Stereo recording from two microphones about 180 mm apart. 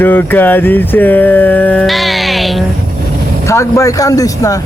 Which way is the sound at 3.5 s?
15° left (ahead or behind).